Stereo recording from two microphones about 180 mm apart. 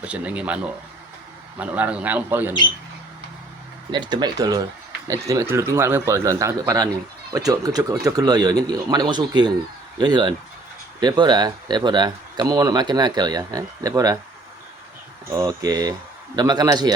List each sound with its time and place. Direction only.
0.0 s speech: 5° right (ahead or behind)
3.9 s speech: 25° right (ahead or behind)
15.4 s speech: 20° right (ahead or behind)